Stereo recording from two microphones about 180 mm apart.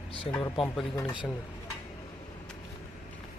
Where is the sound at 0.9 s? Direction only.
20° left (ahead or behind).